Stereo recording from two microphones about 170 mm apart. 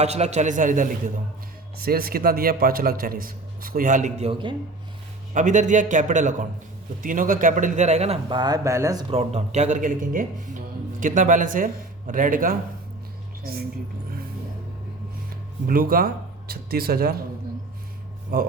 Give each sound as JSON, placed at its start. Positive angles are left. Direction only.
{"t": 0.0, "sound": "a man's voice", "side_deg": -40}
{"t": 4.3, "sound": "a man's voice", "side_deg": -30}
{"t": 5.3, "sound": "a man's voice", "side_deg": -45}
{"t": 9.0, "sound": "a woman's voice", "side_deg": -35}
{"t": 15.6, "sound": "a man's voice", "side_deg": -55}
{"t": 18.3, "sound": "a man's voice", "side_deg": -60}